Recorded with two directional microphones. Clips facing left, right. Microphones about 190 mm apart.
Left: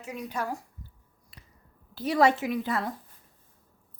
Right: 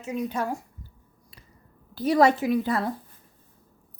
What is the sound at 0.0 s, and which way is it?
Speech, 25° right (ahead or behind).